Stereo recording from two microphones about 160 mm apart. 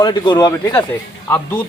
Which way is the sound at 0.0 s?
25° left (ahead or behind).